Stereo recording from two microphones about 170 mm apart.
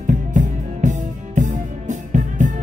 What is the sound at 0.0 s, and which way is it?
Music, 45° right (ahead or behind).